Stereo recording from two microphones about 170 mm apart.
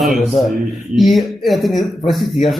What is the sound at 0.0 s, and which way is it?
A man's voice, centre (ahead or behind).